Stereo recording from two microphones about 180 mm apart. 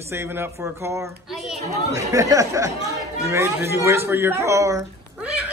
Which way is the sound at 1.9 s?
20° right (ahead or behind).